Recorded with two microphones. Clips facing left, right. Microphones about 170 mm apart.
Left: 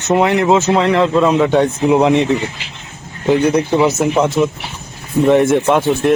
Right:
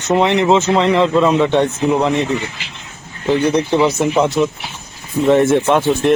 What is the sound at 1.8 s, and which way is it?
Speech, 15° left (ahead or behind).